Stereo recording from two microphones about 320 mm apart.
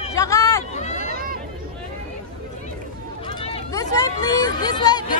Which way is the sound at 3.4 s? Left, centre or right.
Centre.